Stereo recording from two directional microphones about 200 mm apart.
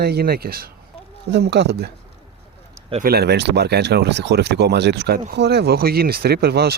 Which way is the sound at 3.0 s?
50° right (ahead or behind).